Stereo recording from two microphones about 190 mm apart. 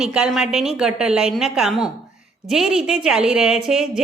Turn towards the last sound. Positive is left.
turn(degrees=-5)  # may be behind; listen again after turning